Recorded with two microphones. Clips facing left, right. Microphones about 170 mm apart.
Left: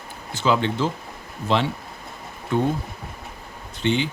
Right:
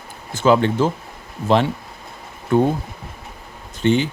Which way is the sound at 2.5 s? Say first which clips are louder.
Right 6 dB; 45° right (ahead or behind).